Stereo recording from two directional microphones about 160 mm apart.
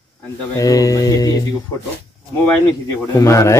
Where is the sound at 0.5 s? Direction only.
20° left (ahead or behind).